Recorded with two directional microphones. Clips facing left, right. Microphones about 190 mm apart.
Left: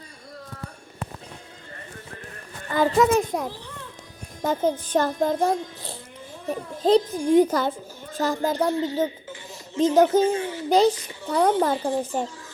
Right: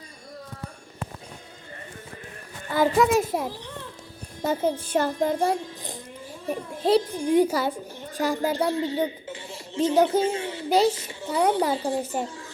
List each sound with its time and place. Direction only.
2.6 s a child's voice: 10° right (ahead or behind)
9.3 s a sound: 30° right (ahead or behind)
10.9 s a woman's voice: 25° right (ahead or behind)
11.3 s a woman's voice: 10° right (ahead or behind)